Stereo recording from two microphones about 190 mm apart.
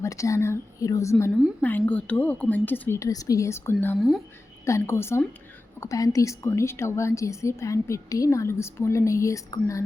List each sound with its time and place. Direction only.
0.0 s speech: 15° left (ahead or behind)
1.3 s a woman's voice: 5° right (ahead or behind)
1.6 s speech: 10° left (ahead or behind)